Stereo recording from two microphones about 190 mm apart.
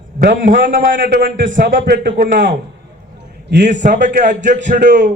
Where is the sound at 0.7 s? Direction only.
45° right (ahead or behind).